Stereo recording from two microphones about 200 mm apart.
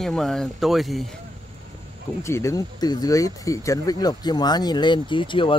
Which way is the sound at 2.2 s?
15° left (ahead or behind).